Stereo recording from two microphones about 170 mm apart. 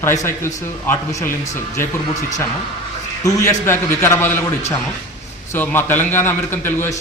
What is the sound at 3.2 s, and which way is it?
A man's voice, 15° left (ahead or behind).